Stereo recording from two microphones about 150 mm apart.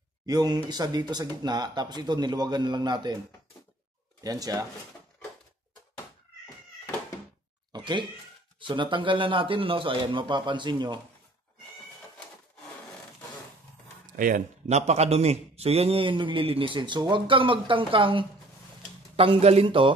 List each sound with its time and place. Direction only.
0.3 s speech: 25° right (ahead or behind)
4.2 s speech: 25° right (ahead or behind)
7.7 s a sound: 30° right (ahead or behind)
8.5 s a man's voice: 35° right (ahead or behind)
14.1 s a man's voice: 65° right (ahead or behind); by 19.9 s 35° right (ahead or behind)